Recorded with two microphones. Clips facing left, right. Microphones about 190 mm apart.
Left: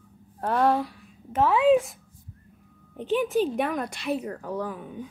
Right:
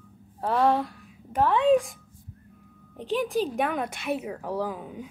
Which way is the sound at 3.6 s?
Centre (ahead or behind).